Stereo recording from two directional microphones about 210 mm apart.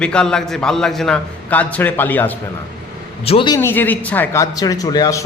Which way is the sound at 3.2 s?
25° left (ahead or behind).